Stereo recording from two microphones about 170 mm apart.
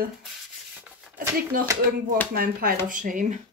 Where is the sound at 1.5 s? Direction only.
55° right (ahead or behind).